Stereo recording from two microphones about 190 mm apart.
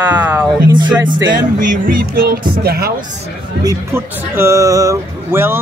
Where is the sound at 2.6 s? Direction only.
55° right (ahead or behind).